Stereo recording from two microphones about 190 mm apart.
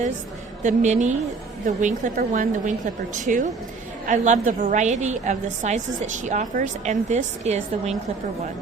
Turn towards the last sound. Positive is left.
turn(degrees=-35)  # may be behind; listen again after turning